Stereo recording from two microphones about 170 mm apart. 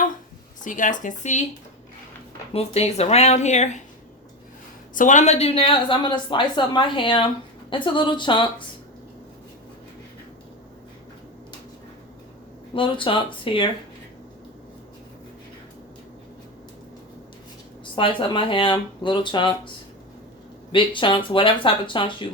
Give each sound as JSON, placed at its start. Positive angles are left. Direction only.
{"t": 0.6, "sound": "speech", "side_deg": 50}
{"t": 2.5, "sound": "speech", "side_deg": 35}
{"t": 4.9, "sound": "a woman's voice", "side_deg": 45}
{"t": 12.7, "sound": "a woman's voice", "side_deg": 30}
{"t": 17.9, "sound": "a woman's voice", "side_deg": 30}
{"t": 20.7, "sound": "a woman's voice", "side_deg": 30}